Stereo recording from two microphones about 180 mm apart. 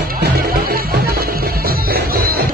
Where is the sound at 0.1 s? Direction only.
55° right (ahead or behind).